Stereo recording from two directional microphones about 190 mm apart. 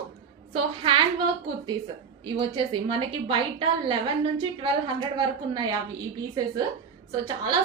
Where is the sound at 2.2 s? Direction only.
25° right (ahead or behind).